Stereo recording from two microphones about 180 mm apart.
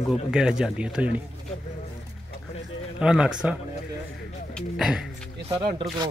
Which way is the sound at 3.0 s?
5° right (ahead or behind).